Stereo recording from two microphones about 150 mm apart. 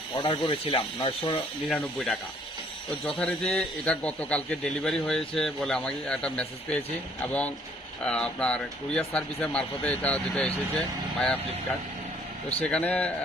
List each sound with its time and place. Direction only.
0.2 s speech: 35° left (ahead or behind)
1.7 s a man's voice: 5° left (ahead or behind)
3.2 s a man's voice: 5° left (ahead or behind)
8.0 s speech: 5° left (ahead or behind)
12.5 s speech: 10° left (ahead or behind)